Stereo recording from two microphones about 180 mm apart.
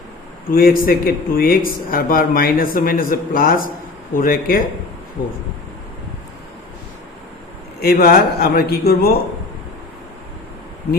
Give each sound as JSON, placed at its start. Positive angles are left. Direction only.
{"t": 0.5, "sound": "speech", "side_deg": 55}
{"t": 7.8, "sound": "a man's voice", "side_deg": 55}